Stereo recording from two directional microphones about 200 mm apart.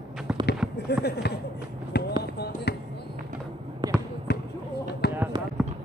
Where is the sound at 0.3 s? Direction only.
5° right (ahead or behind).